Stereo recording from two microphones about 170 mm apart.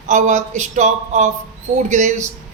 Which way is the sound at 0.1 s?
45° right (ahead or behind).